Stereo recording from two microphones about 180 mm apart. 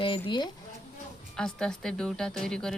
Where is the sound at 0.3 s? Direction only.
25° left (ahead or behind).